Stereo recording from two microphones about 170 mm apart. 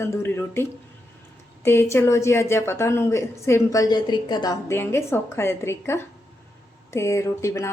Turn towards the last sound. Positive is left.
turn(degrees=15)  # may be behind; listen again after turning